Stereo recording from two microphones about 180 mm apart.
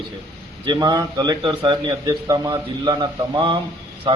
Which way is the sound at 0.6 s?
25° right (ahead or behind).